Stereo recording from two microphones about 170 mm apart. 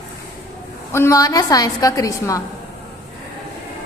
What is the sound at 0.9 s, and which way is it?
A woman's voice, 15° left (ahead or behind).